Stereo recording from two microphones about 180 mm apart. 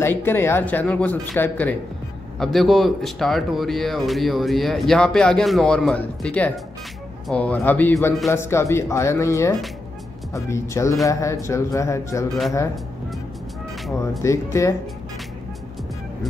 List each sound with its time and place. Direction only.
0.0 s speech: 10° left (ahead or behind)
14.2 s speech: 15° left (ahead or behind)